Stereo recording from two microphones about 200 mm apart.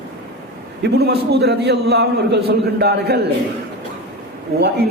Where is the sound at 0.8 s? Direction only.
55° right (ahead or behind).